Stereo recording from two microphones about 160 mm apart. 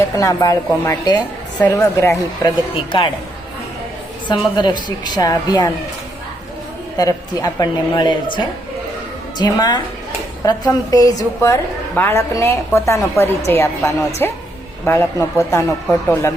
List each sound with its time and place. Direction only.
0.2 s a woman's voice: 20° left (ahead or behind)
2.7 s a woman's voice: 30° left (ahead or behind)
4.3 s a woman's voice: 25° left (ahead or behind)
6.9 s a woman's voice: 25° left (ahead or behind)